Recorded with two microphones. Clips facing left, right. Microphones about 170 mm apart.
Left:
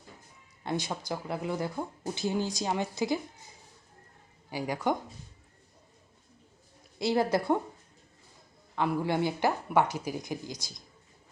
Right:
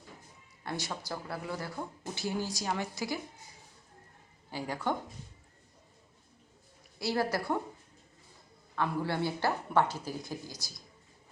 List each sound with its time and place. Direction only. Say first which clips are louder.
0.6 s speech: left 5 dB; 20° left (ahead or behind)
4.4 s speech: left 4 dB; 10° left (ahead or behind)
7.0 s speech: left 5 dB; 20° left (ahead or behind)
8.7 s speech: left 4 dB; 15° left (ahead or behind)